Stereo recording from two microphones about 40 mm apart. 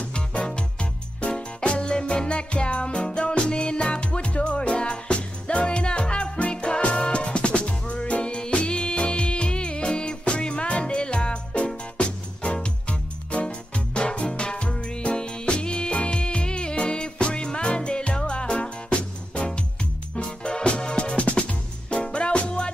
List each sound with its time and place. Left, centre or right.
0.1 s music: left